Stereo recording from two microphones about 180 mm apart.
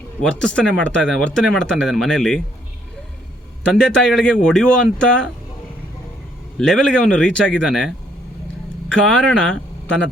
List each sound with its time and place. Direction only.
0.2 s speech: 5° left (ahead or behind)
3.7 s speech: 5° left (ahead or behind)
6.6 s speech: 5° left (ahead or behind)